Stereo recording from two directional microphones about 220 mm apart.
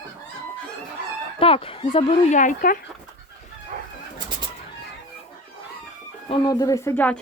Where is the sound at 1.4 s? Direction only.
25° left (ahead or behind).